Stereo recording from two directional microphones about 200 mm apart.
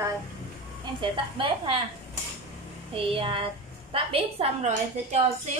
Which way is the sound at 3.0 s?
25° right (ahead or behind).